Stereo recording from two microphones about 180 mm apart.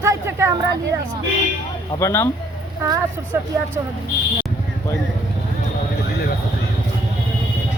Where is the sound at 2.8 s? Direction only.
15° right (ahead or behind).